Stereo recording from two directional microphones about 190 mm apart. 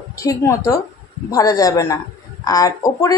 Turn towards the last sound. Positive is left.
turn(degrees=20)  # may be behind; listen again after turning